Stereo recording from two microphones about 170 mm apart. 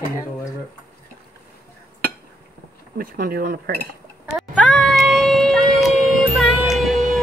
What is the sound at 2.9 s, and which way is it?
Cutlery, 60° right (ahead or behind).